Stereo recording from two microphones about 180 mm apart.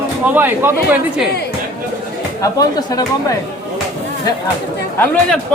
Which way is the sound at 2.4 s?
20° left (ahead or behind).